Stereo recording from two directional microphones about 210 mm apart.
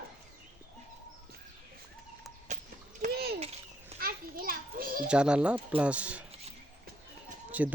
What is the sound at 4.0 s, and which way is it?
Children playing, 45° right (ahead or behind).